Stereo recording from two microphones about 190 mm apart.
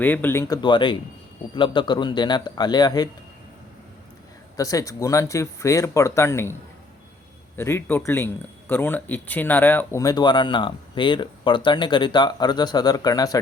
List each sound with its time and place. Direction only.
0.0 s speech: 10° left (ahead or behind)
4.5 s speech: 15° left (ahead or behind)